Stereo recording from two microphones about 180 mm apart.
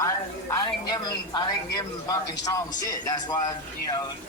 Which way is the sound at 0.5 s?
25° left (ahead or behind).